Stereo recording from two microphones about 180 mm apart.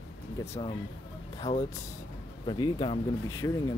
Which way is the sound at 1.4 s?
35° left (ahead or behind).